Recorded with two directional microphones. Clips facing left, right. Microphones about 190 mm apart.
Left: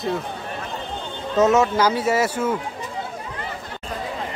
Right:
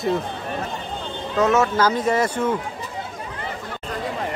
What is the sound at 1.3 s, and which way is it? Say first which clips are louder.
Speech: left 2 dB; 20° left (ahead or behind).